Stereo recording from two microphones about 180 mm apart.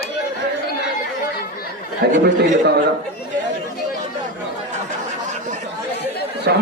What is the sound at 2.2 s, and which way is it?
Speech, 75° right (ahead or behind).